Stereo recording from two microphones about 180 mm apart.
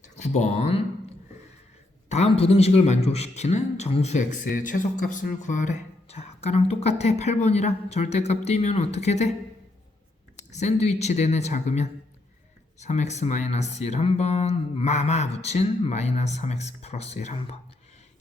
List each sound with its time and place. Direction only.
0.0 s a sound: 40° left (ahead or behind)
2.0 s a man's voice: 35° left (ahead or behind)
10.5 s a man's voice: 40° left (ahead or behind)